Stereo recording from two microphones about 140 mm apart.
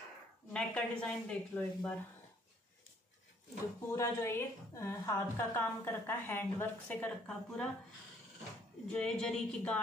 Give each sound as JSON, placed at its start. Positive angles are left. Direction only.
{"t": 0.5, "sound": "a woman's voice", "side_deg": 5}
{"t": 3.9, "sound": "a woman's voice", "side_deg": 20}
{"t": 8.8, "sound": "speech", "side_deg": 5}